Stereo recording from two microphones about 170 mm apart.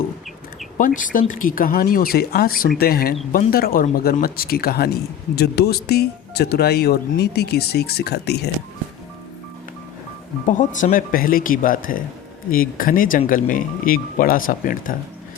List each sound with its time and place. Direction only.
0.8 s speech: 50° left (ahead or behind); by 8.4 s 75° left (ahead or behind)
10.4 s speech: 50° left (ahead or behind)